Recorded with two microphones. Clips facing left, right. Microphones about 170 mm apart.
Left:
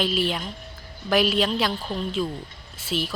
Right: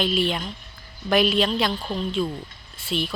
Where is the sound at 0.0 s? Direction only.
5° left (ahead or behind).